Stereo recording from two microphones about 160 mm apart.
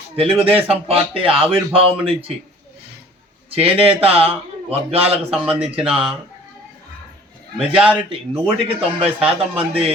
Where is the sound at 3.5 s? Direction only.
35° right (ahead or behind).